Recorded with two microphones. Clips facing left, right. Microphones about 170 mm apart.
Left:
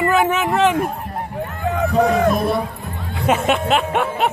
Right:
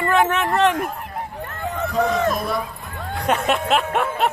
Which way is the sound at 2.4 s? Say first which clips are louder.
Left 5 dB; 25° left (ahead or behind).